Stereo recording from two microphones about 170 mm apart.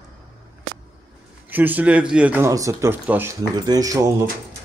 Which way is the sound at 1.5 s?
10° right (ahead or behind).